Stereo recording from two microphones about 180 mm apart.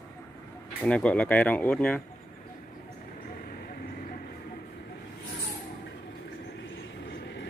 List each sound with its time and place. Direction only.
0.8 s speech: 5° left (ahead or behind)
7.1 s train: 90° left